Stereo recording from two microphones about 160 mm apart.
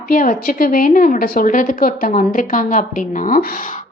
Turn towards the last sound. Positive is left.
turn(degrees=60)  # may be behind; listen again after turning